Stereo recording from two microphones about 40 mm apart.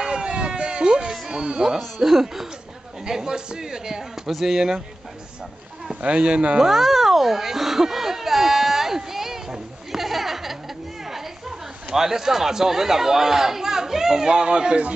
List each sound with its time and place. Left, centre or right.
0.0 s a sound: right
1.3 s speech: right
2.0 s speech: centre
6.0 s speech: right
6.6 s a sound: centre
11.9 s speech: centre